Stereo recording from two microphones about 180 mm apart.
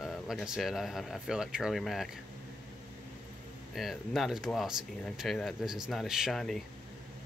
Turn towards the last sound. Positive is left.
turn(degrees=0)  # may be behind; listen again after turning